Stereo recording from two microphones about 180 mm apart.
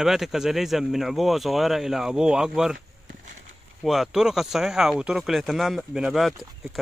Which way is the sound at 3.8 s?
Centre (ahead or behind).